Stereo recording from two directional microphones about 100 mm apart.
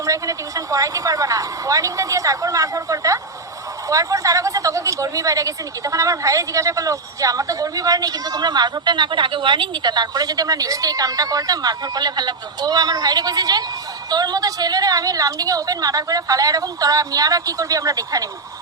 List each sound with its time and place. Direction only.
0.0 s a woman's voice: 35° right (ahead or behind)